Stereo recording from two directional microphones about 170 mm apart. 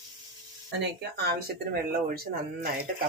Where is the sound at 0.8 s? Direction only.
70° right (ahead or behind).